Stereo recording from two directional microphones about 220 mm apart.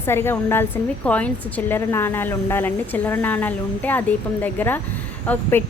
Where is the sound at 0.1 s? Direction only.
10° left (ahead or behind).